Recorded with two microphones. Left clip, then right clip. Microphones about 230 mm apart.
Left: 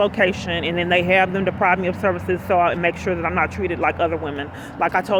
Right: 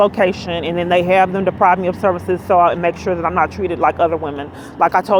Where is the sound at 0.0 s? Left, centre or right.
Centre.